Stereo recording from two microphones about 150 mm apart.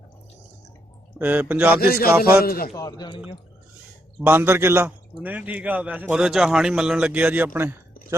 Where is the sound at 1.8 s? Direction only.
90° left.